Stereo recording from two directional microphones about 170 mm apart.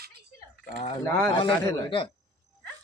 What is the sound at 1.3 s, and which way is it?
Speech, 25° left (ahead or behind).